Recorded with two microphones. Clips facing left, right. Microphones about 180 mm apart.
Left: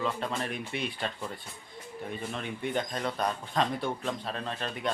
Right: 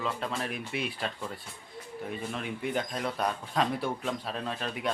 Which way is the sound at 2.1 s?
5° right (ahead or behind).